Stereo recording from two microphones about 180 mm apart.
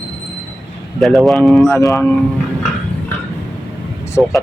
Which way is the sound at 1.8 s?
20° left (ahead or behind).